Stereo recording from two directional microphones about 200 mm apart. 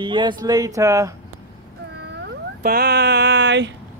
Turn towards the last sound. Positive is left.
turn(degrees=-65)  # may be behind; listen again after turning